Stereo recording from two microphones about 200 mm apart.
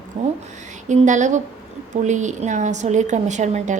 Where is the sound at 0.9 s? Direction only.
40° right (ahead or behind).